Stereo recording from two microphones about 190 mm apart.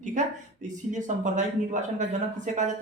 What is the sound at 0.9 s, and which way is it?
A man's voice, 40° right (ahead or behind).